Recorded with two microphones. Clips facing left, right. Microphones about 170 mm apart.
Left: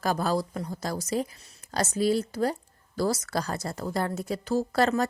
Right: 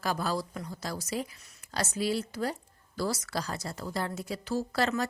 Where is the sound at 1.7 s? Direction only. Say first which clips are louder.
Left 5 dB; 40° left (ahead or behind).